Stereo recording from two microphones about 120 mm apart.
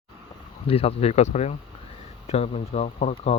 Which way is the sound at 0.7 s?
55° left (ahead or behind).